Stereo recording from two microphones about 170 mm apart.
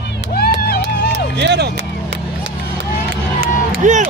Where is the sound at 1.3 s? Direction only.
80° right.